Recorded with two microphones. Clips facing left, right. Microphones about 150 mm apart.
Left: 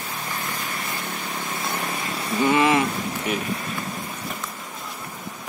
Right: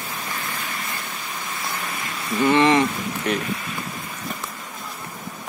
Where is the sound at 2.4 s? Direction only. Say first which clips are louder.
Right 2 dB; 5° left (ahead or behind).